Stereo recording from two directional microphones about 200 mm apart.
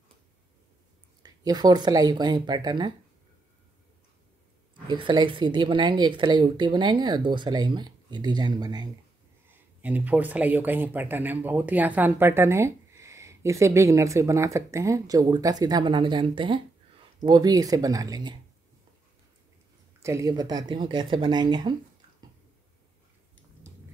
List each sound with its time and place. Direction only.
1.2 s speech: 20° right (ahead or behind)
4.8 s speech: 25° right (ahead or behind)
9.8 s speech: 10° right (ahead or behind)
20.0 s speech: 15° right (ahead or behind)